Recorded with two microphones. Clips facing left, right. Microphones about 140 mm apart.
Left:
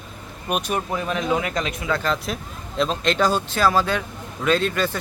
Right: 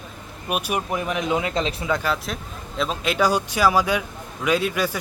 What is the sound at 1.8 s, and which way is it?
Speech, 15° right (ahead or behind).